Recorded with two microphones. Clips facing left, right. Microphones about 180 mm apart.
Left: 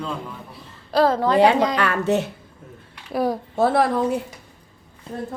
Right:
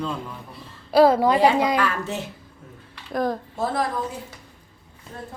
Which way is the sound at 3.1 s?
10° left (ahead or behind).